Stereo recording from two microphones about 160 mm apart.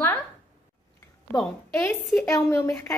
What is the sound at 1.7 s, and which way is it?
A woman's voice, 15° left (ahead or behind).